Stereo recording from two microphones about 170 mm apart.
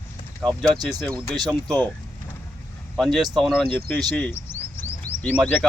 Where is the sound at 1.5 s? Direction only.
5° left (ahead or behind).